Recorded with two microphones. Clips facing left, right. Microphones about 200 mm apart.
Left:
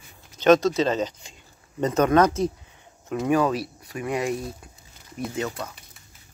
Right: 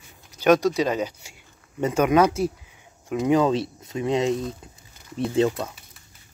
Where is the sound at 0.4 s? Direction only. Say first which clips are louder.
Left 1 dB; 10° right (ahead or behind); by 5.7 s 30° right (ahead or behind).